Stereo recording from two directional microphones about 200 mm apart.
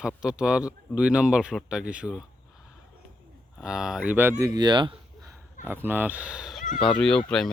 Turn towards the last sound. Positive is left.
turn(degrees=5)  # may be behind; listen again after turning